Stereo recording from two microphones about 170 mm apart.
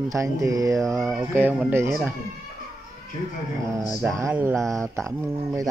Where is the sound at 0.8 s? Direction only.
Centre (ahead or behind).